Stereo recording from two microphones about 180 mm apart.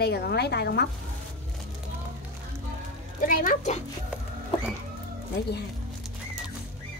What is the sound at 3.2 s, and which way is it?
Speech, 50° left (ahead or behind).